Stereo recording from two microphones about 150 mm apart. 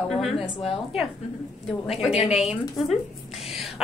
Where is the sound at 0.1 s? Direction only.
Centre (ahead or behind).